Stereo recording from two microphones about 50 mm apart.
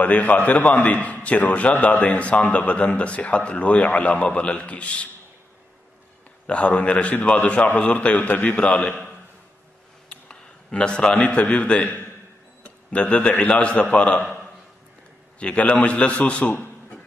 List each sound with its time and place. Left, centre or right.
0.0 s a man's voice: left
6.4 s a man's voice: left
10.0 s a sound: left
11.1 s a man's voice: left
12.6 s a sound: left
13.5 s a man's voice: left
15.3 s a man's voice: left